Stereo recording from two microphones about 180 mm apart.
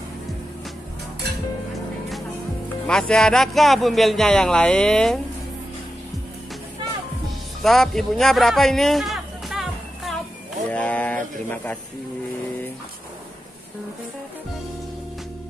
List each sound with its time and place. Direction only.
2.9 s a man's voice: 5° left (ahead or behind)
7.6 s a sound: centre (ahead or behind)
10.7 s speech: 10° left (ahead or behind)